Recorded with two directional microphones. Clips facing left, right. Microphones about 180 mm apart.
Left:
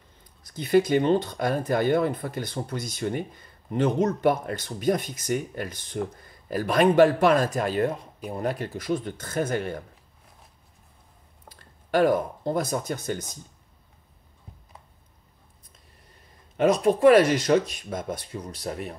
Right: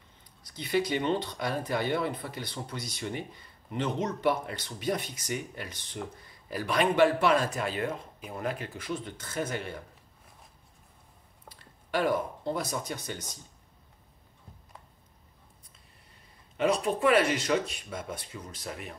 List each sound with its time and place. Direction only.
0.5 s speech: 45° left (ahead or behind)
11.5 s speech: 45° left (ahead or behind)
16.5 s speech: 45° left (ahead or behind)